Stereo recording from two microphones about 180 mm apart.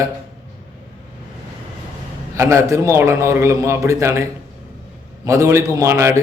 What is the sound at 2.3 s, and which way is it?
A man's voice, 15° right (ahead or behind).